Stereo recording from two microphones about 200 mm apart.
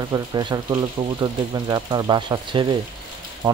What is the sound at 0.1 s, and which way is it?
Speech, 20° right (ahead or behind).